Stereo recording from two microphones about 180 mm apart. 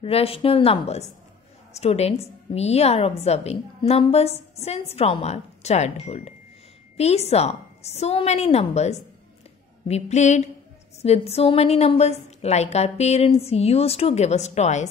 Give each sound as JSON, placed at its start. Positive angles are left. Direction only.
{"t": 0.0, "sound": "a woman's voice", "side_deg": 30}